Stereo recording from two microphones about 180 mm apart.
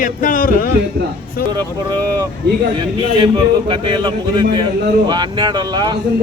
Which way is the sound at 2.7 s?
25° right (ahead or behind).